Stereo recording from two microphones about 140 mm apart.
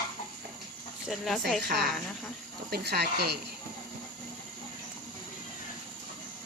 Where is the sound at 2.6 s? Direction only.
90° right.